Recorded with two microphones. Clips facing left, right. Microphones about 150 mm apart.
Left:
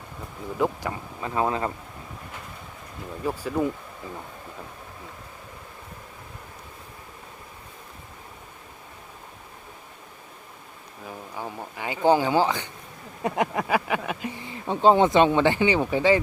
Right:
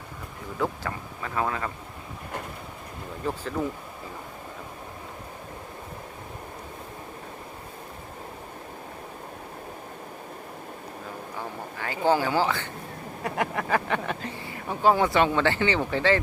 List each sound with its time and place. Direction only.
0.6 s speech: 15° left (ahead or behind)
3.2 s speech: 10° left (ahead or behind)
11.3 s speech: 15° left (ahead or behind)